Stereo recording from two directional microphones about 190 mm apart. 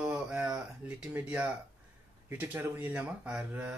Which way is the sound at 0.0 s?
5° right (ahead or behind).